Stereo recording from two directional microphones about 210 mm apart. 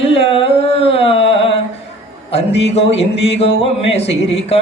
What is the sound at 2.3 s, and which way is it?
Speech, 30° left (ahead or behind).